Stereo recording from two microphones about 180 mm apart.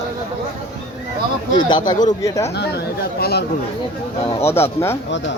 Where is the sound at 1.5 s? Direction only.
25° left (ahead or behind).